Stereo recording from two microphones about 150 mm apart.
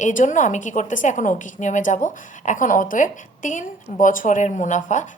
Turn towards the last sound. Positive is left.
turn(degrees=55)  # may be behind; listen again after turning